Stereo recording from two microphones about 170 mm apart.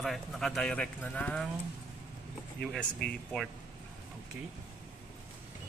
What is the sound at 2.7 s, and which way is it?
Speech, 5° left (ahead or behind).